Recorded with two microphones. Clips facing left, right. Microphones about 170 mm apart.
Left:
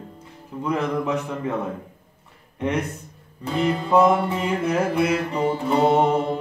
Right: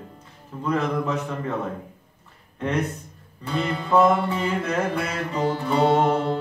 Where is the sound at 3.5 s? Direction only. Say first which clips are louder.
Left 2 dB; 15° left (ahead or behind).